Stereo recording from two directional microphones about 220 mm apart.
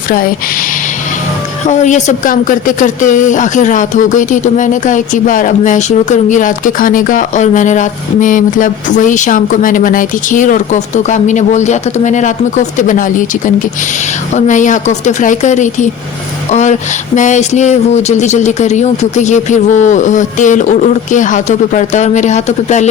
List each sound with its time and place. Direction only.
1.6 s speech: 35° left (ahead or behind)